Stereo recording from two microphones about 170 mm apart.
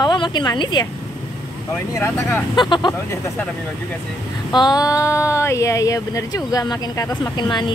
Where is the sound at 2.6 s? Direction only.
25° left (ahead or behind).